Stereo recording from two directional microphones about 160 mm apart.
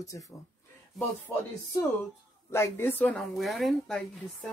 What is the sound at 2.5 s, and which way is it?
Speech, 15° left (ahead or behind).